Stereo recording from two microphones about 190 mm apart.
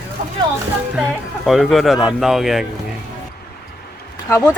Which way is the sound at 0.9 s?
5° right (ahead or behind).